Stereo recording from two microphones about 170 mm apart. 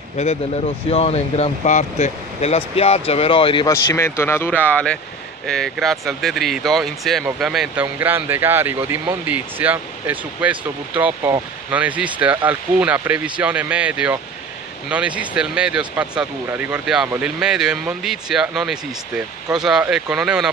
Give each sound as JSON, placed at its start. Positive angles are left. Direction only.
{"t": 0.2, "sound": "speech", "side_deg": 40}
{"t": 3.6, "sound": "speech", "side_deg": 15}